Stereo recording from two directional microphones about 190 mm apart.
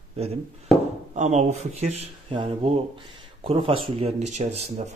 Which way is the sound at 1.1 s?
35° right (ahead or behind).